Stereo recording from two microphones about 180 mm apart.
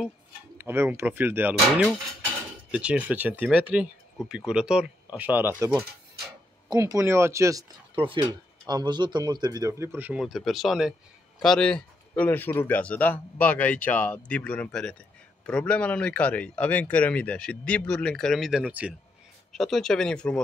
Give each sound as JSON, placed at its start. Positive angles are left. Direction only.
{"t": 0.6, "sound": "a man's voice", "side_deg": -10}
{"t": 7.9, "sound": "speech", "side_deg": -30}
{"t": 9.9, "sound": "a man's voice", "side_deg": -5}